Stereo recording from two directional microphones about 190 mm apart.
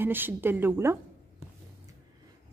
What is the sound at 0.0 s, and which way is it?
Speech, 10° right (ahead or behind).